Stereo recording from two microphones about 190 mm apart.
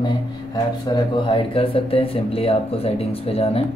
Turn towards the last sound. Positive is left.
turn(degrees=30)  # may be behind; listen again after turning